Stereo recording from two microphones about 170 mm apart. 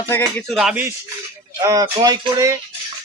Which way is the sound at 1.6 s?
20° right (ahead or behind).